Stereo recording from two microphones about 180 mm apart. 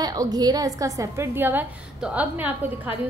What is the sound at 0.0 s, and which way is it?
A woman's voice, 20° right (ahead or behind).